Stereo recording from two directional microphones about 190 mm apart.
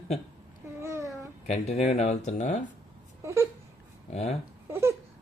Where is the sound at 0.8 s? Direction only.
15° right (ahead or behind).